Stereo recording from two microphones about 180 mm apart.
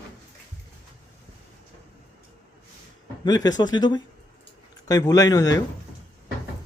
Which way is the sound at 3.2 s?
20° left (ahead or behind).